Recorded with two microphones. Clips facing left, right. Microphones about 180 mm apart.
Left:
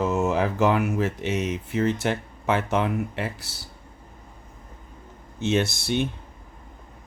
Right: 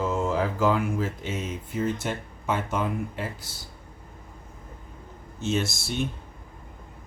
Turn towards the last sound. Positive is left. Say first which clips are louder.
# left 4 dB
turn(degrees=60)  # may be behind; listen again after turning